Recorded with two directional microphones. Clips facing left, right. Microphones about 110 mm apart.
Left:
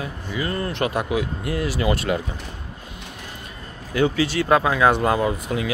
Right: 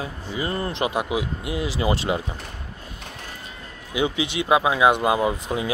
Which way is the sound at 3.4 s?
15° right (ahead or behind).